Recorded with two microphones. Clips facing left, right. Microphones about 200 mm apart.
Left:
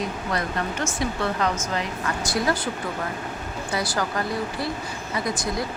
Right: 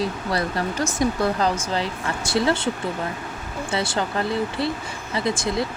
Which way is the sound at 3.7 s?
25° right (ahead or behind).